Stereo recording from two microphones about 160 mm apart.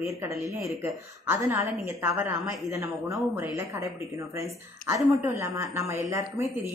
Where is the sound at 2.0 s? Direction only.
15° right (ahead or behind).